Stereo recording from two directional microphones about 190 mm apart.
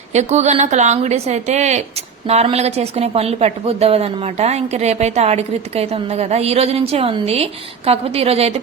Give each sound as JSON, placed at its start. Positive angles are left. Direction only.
{"t": 0.1, "sound": "a woman's voice", "side_deg": -35}